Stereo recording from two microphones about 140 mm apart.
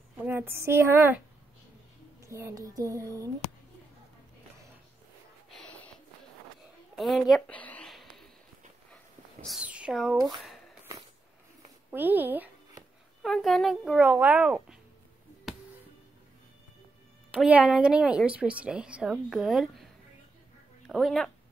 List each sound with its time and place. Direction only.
0.2 s a woman's voice: 15° right (ahead or behind)
2.2 s speech: 20° right (ahead or behind)
5.6 s snort: 10° left (ahead or behind)
7.0 s speech: centre (ahead or behind)
7.9 s a sound: centre (ahead or behind)
8.9 s dog: 5° left (ahead or behind)
9.6 s speech: 5° right (ahead or behind)
10.2 s a sound: centre (ahead or behind)
11.9 s a woman's voice: 15° right (ahead or behind)
13.2 s a child's voice: centre (ahead or behind)
13.9 s a woman's voice: 10° right (ahead or behind)
15.5 s music: centre (ahead or behind)
17.3 s a woman's voice: 10° right (ahead or behind)